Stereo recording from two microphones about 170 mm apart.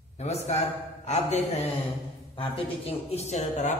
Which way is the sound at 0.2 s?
40° left (ahead or behind).